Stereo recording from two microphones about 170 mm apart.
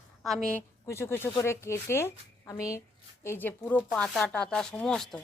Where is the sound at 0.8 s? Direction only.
15° left (ahead or behind).